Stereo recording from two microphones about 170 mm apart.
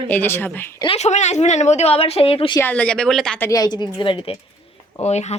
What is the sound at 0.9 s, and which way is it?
Speech, 40° left (ahead or behind).